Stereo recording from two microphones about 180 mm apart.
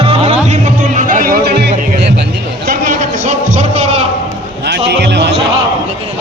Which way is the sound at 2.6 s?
45° right (ahead or behind).